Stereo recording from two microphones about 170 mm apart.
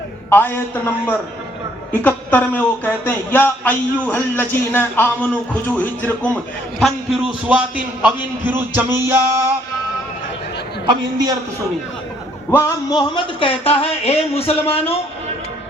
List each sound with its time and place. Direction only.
0.3 s speech: 10° left (ahead or behind)
1.9 s speech: 10° left (ahead or behind); by 7.6 s 5° right (ahead or behind)
8.0 s music: 10° right (ahead or behind)
12.5 s speech: 15° left (ahead or behind); by 15.0 s 35° left (ahead or behind)